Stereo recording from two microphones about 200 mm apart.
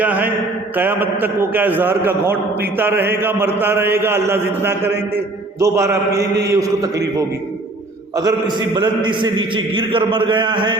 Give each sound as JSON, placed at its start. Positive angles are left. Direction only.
{"t": 0.0, "sound": "a man's voice", "side_deg": -10}
{"t": 8.1, "sound": "a man's voice", "side_deg": -20}